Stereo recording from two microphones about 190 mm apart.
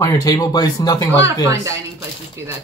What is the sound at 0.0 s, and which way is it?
Speech, 20° left (ahead or behind).